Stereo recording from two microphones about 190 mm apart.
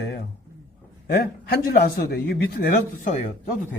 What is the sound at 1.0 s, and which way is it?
A man's voice, 55° left (ahead or behind).